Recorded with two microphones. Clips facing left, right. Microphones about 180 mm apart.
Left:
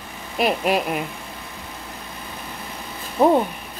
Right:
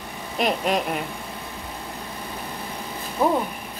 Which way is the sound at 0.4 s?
5° left (ahead or behind).